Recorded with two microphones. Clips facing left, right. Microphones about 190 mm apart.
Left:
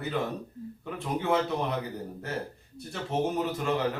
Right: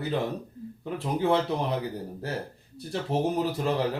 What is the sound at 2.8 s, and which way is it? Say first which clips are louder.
A man's voice: right 2 dB; 35° right (ahead or behind).